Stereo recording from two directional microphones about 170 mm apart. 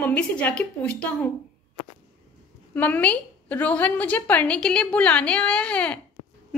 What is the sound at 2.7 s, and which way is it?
A woman's voice, 10° left (ahead or behind).